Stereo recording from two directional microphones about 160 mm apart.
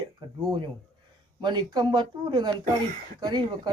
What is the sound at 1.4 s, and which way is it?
Speech, 30° right (ahead or behind).